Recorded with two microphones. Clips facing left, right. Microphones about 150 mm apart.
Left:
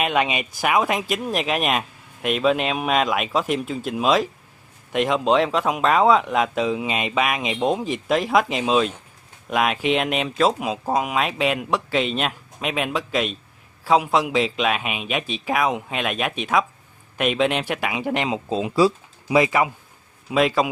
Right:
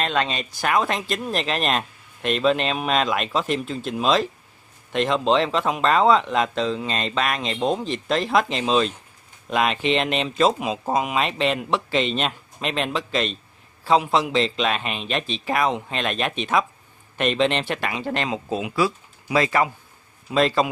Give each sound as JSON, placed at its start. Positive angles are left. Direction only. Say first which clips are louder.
{"t": 0.0, "sound": "speech", "louder": "left 2 dB", "side_deg": 10}
{"t": 18.6, "sound": "speech", "louder": "left 7 dB", "side_deg": 30}
{"t": 19.3, "sound": "speech", "louder": "left 2 dB", "side_deg": 15}